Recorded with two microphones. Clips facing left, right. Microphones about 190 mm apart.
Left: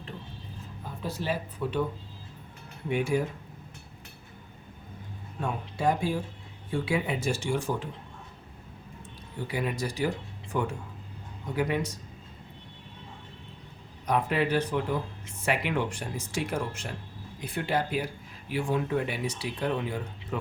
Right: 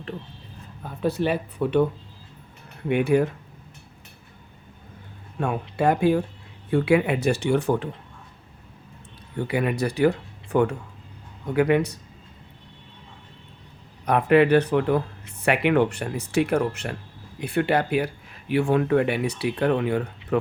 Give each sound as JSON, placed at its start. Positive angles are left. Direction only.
{"t": 0.8, "sound": "speech", "side_deg": -60}
{"t": 2.9, "sound": "speech", "side_deg": -65}
{"t": 5.4, "sound": "speech", "side_deg": -65}
{"t": 9.3, "sound": "speech", "side_deg": -65}
{"t": 14.0, "sound": "speech", "side_deg": -65}